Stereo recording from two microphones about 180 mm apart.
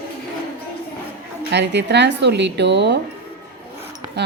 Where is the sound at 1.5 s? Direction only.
75° right (ahead or behind).